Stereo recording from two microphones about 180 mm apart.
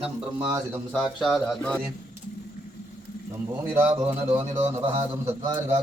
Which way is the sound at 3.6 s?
10° right (ahead or behind).